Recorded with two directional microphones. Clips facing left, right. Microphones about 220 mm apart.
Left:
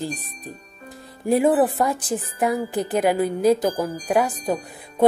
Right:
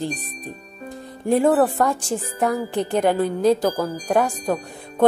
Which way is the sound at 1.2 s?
10° left (ahead or behind).